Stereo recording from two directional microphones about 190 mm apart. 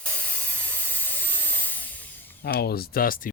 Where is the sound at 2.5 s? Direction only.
55° left (ahead or behind).